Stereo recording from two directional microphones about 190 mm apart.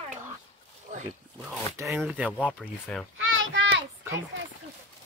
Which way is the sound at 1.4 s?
10° right (ahead or behind).